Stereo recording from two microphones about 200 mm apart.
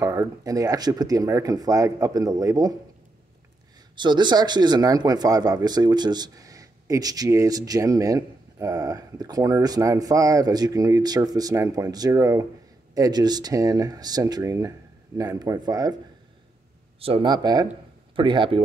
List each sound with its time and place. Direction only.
0.0 s speech: 15° right (ahead or behind)
3.9 s speech: 20° right (ahead or behind)
17.0 s speech: 25° right (ahead or behind)